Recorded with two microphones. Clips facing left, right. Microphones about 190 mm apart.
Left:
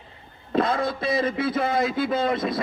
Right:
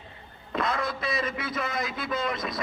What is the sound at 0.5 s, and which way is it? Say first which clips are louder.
A man's voice: left 6 dB; 30° left (ahead or behind).